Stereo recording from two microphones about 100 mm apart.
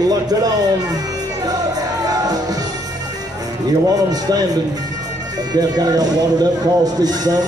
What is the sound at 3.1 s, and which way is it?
Speech, 40° right (ahead or behind).